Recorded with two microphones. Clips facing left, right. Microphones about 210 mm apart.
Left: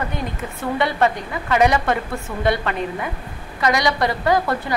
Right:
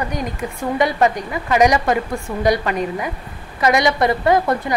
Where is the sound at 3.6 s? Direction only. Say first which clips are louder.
Right 3 dB; 25° right (ahead or behind).